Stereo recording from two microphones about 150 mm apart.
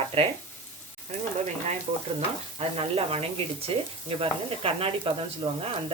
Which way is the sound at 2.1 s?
40° right (ahead or behind).